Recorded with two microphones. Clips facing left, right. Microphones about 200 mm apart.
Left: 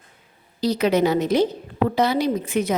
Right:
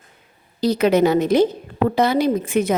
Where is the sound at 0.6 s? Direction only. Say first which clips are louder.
Right 3 dB; 50° right (ahead or behind).